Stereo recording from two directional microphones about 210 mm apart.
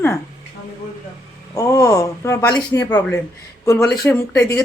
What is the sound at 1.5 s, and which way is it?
Speech, 15° left (ahead or behind).